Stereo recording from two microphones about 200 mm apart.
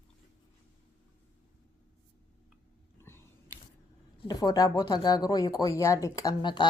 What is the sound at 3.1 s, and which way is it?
Biting, 10° left (ahead or behind).